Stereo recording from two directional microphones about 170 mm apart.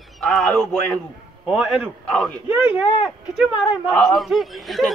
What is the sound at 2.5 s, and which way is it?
Speech, 10° right (ahead or behind).